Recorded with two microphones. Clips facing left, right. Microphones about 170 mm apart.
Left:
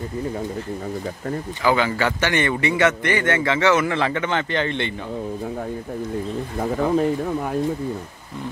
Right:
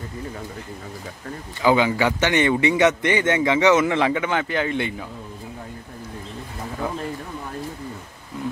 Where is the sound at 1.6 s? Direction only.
15° right (ahead or behind).